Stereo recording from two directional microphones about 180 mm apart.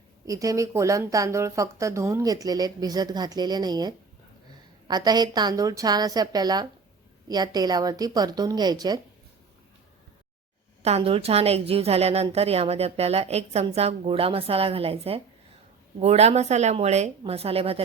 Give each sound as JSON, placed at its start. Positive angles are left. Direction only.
{"t": 0.3, "sound": "speech", "side_deg": -20}
{"t": 10.8, "sound": "a woman's voice", "side_deg": -35}